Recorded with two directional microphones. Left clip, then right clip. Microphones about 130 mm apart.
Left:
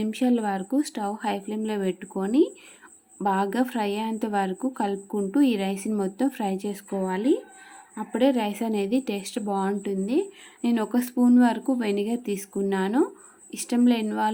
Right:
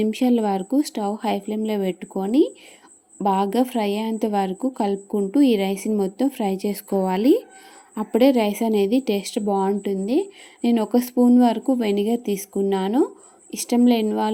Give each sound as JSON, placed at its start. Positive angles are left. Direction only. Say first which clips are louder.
{"t": 0.0, "sound": "a woman's voice", "louder": "right 5 dB", "side_deg": -25}
{"t": 7.9, "sound": "a woman's voice", "louder": "right 6 dB", "side_deg": -40}